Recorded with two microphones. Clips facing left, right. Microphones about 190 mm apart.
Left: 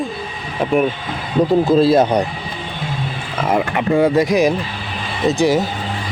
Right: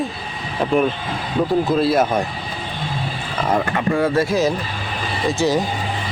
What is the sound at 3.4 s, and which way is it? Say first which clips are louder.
Speech: left 2 dB; 15° left (ahead or behind).